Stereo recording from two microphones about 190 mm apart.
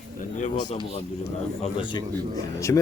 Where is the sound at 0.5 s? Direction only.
25° left (ahead or behind).